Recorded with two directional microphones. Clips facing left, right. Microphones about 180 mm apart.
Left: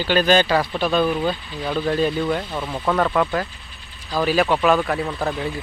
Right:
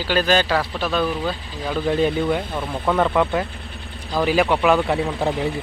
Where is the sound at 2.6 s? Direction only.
Centre (ahead or behind).